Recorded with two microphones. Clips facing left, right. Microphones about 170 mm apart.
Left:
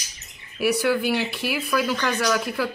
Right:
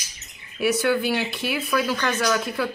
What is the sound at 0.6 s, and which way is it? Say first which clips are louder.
Speech: even; centre (ahead or behind).